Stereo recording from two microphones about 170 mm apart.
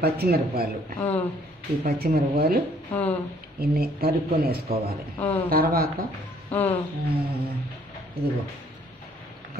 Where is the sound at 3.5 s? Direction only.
65° right (ahead or behind).